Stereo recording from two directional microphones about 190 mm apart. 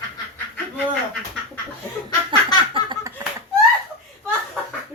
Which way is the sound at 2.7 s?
25° right (ahead or behind).